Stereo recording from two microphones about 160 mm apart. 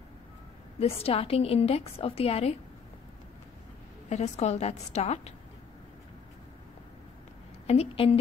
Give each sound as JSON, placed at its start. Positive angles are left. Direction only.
{"t": 0.7, "sound": "a woman's voice", "side_deg": 35}
{"t": 4.1, "sound": "a woman's voice", "side_deg": 45}
{"t": 7.6, "sound": "a woman's voice", "side_deg": 40}